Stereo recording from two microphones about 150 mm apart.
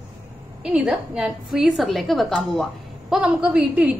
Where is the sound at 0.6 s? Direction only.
5° right (ahead or behind).